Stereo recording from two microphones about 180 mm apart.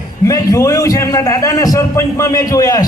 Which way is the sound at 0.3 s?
20° left (ahead or behind).